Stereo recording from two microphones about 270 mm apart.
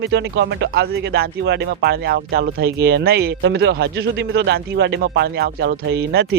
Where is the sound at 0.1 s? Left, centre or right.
Right.